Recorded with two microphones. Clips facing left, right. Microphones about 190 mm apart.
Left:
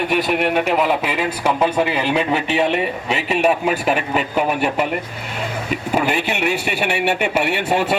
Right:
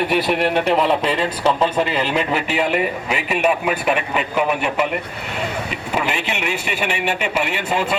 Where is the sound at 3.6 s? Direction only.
40° left (ahead or behind).